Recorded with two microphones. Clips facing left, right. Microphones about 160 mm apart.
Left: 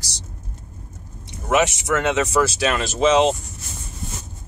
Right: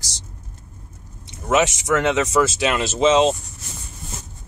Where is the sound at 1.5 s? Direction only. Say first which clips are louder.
Right 1 dB; 20° right (ahead or behind).